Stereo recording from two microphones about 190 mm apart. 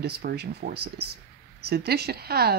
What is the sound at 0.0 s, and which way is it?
A woman's voice, 60° right (ahead or behind).